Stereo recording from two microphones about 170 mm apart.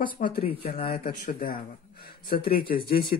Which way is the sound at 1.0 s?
55° left (ahead or behind).